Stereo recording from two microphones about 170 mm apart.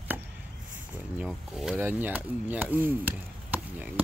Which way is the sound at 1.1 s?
5° right (ahead or behind).